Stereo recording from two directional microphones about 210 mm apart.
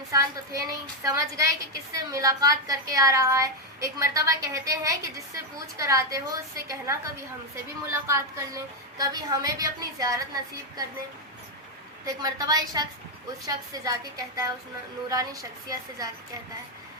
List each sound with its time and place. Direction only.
0.1 s a woman's voice: 15° right (ahead or behind)
12.0 s a woman's voice: 15° right (ahead or behind)